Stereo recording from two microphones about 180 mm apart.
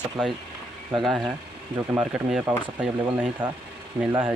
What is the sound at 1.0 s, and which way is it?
Speech, centre (ahead or behind).